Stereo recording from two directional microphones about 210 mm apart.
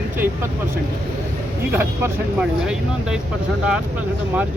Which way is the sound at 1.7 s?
5° right (ahead or behind).